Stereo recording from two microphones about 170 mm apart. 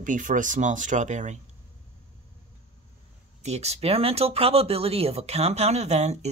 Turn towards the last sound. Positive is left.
turn(degrees=-40)  # may be behind; listen again after turning